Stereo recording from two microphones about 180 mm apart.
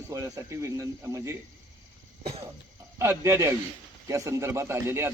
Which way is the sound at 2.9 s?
15° right (ahead or behind).